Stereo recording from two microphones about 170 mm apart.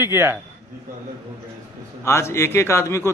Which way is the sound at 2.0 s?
15° left (ahead or behind).